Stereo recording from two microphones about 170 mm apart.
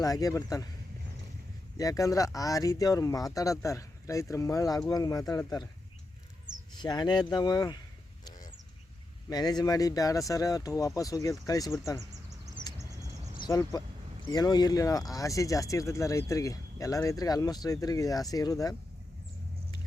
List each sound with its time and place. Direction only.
0.0 s speech: 20° left (ahead or behind)
1.8 s speech: 20° left (ahead or behind)
6.7 s speech: 25° left (ahead or behind)
9.3 s speech: 25° left (ahead or behind)
12.8 s a sound: 20° right (ahead or behind)
13.7 s speech: 20° left (ahead or behind)